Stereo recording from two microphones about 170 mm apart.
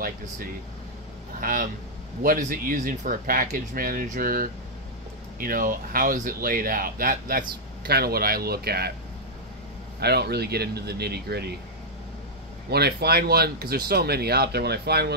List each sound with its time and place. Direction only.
1.4 s speech: 55° right (ahead or behind)
9.9 s speech: 70° right (ahead or behind)
12.6 s speech: 70° right (ahead or behind)